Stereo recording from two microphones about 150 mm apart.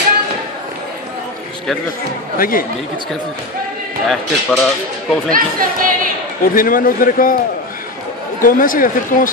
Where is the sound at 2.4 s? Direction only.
70° left (ahead or behind).